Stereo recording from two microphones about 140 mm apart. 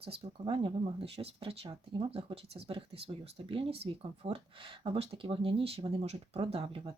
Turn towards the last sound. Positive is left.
turn(degrees=-40)  # may be behind; listen again after turning